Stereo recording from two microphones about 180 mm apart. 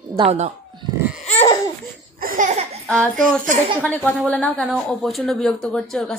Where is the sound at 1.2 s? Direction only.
35° left (ahead or behind).